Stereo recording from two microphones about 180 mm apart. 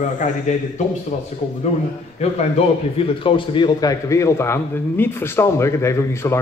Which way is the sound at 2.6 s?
35° left (ahead or behind).